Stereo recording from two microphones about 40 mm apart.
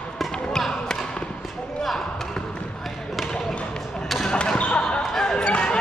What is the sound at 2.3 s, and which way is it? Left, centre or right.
Basketball bounce, left.